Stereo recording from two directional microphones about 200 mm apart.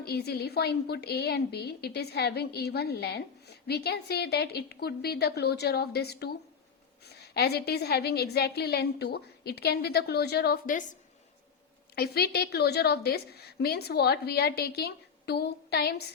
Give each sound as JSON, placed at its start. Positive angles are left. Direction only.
{"t": 0.0, "sound": "a woman's voice", "side_deg": 55}
{"t": 11.9, "sound": "a woman's voice", "side_deg": 50}